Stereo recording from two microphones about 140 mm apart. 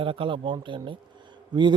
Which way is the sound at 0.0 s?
40° right (ahead or behind).